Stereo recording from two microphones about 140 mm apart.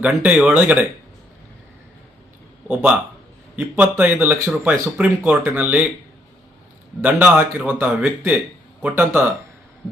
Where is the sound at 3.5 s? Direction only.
10° right (ahead or behind).